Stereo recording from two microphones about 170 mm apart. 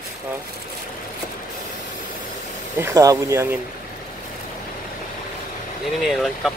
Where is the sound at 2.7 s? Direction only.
15° right (ahead or behind).